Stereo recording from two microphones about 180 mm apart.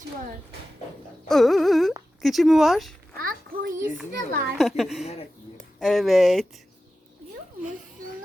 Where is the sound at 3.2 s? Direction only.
55° right (ahead or behind).